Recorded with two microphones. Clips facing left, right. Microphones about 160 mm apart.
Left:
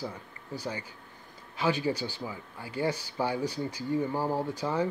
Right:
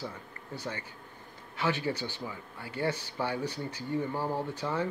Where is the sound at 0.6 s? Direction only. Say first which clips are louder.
Left 3 dB; 10° left (ahead or behind).